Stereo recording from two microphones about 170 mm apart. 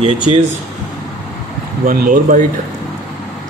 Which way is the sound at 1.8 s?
55° right (ahead or behind).